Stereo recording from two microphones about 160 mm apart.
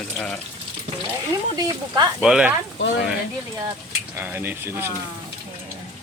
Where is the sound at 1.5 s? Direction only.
25° right (ahead or behind).